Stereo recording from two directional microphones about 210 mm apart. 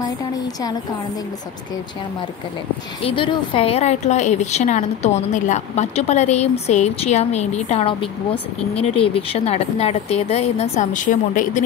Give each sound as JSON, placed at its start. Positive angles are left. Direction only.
{"t": 3.0, "sound": "a woman's voice", "side_deg": 25}